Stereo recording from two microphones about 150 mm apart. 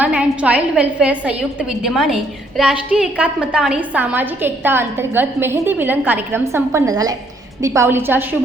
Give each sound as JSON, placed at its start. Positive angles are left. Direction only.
{"t": 0.0, "sound": "a woman's voice", "side_deg": -10}